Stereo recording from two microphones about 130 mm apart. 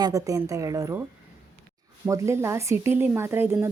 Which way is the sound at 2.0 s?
25° right (ahead or behind).